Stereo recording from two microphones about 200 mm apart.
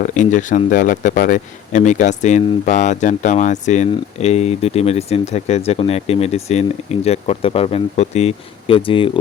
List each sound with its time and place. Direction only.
0.0 s a man's voice: 40° left (ahead or behind)